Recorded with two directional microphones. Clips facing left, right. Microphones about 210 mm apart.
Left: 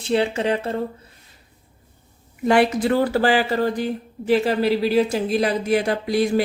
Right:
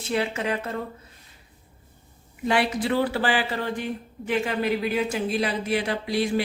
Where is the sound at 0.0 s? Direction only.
30° left (ahead or behind).